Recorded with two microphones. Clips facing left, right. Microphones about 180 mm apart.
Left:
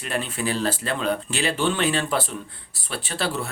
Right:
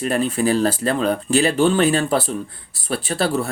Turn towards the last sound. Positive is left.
turn(degrees=-40)  # may be behind; listen again after turning